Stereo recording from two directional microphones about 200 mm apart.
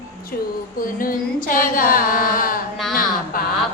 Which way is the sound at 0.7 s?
45° left (ahead or behind).